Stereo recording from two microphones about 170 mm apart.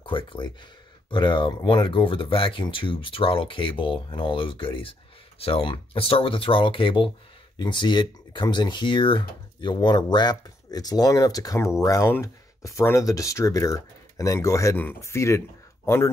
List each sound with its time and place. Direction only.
0.0 s speech: 30° left (ahead or behind)